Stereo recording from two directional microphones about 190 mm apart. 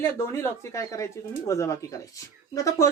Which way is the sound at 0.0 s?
15° left (ahead or behind).